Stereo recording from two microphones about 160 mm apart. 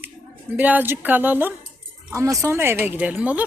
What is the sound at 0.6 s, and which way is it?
Speech, 10° right (ahead or behind).